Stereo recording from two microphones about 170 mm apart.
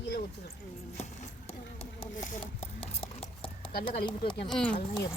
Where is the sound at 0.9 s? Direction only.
40° left (ahead or behind).